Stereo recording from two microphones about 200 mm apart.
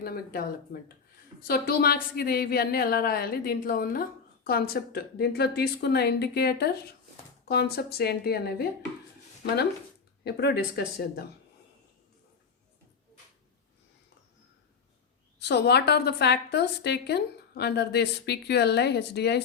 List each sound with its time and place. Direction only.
0.0 s a woman's voice: 50° left (ahead or behind)
10.2 s a woman's voice: 55° left (ahead or behind)
15.4 s a woman's voice: 55° left (ahead or behind)